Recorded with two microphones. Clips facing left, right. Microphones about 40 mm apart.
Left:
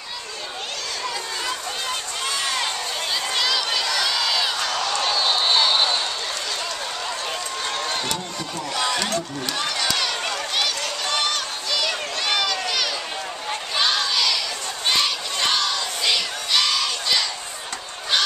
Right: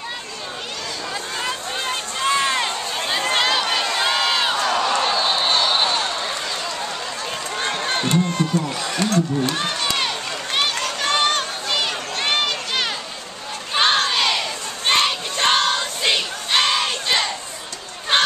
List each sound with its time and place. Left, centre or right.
1.4 s a sound: right
3.8 s crowd: right
5.2 s a sound: centre
7.8 s crowd: right
8.3 s crowd: right
8.7 s speech: left
9.5 s run: right
11.1 s a sound: right
13.7 s crowd: right